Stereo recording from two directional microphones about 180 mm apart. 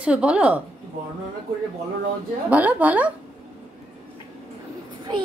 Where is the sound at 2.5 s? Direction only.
10° right (ahead or behind).